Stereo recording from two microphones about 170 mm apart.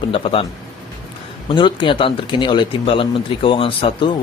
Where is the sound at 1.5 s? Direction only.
30° left (ahead or behind).